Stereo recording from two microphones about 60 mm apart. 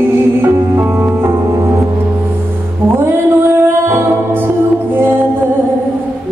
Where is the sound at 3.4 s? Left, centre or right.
Right.